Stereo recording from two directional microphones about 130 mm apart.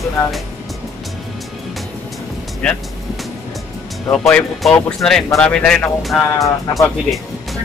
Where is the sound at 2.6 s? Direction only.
5° left (ahead or behind).